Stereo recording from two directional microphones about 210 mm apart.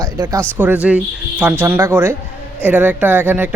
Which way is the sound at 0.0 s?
15° right (ahead or behind).